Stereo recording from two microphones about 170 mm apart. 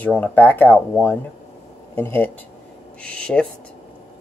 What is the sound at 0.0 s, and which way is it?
Speech, 10° left (ahead or behind).